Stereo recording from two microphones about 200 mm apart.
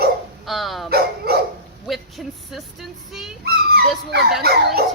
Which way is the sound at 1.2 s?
50° right (ahead or behind).